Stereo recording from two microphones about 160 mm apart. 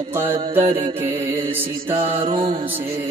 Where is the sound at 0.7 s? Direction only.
35° right (ahead or behind).